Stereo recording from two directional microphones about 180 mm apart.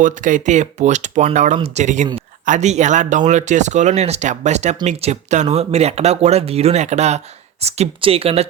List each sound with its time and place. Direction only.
0.0 s speech: 45° right (ahead or behind)